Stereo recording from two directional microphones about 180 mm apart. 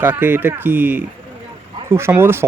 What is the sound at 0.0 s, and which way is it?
Speech, 10° right (ahead or behind).